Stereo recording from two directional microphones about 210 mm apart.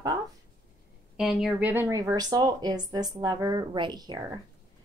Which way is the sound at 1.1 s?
5° right (ahead or behind).